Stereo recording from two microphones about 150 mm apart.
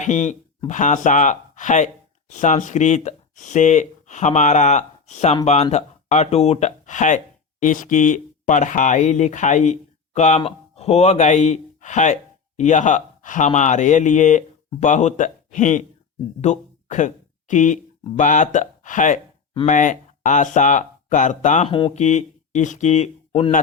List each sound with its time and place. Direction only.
0.0 s speech: 55° left (ahead or behind)
21.7 s speech: 35° left (ahead or behind)
21.9 s speech: 50° left (ahead or behind)